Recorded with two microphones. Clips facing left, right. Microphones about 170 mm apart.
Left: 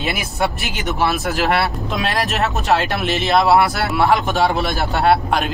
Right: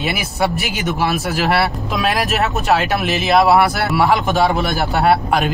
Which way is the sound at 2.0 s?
Centre (ahead or behind).